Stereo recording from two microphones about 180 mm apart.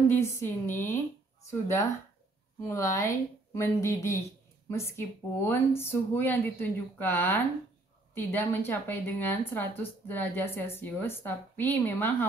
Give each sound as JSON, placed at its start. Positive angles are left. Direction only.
{"t": 0.1, "sound": "speech", "side_deg": 15}